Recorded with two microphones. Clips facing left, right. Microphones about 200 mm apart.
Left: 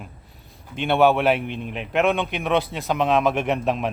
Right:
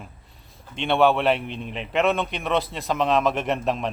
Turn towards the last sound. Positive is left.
turn(degrees=0)  # may be behind; listen again after turning